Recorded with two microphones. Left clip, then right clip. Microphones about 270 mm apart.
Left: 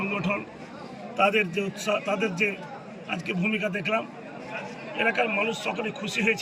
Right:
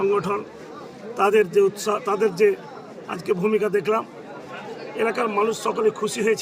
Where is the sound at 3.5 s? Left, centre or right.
Centre.